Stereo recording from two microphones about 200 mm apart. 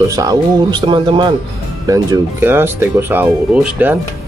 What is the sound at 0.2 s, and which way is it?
Speech, 20° right (ahead or behind).